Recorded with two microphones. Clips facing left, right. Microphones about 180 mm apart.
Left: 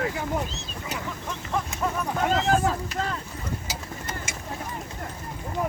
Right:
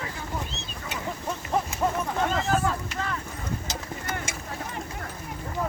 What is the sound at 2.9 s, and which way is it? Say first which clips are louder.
Speech: left 2 dB; 30° left (ahead or behind).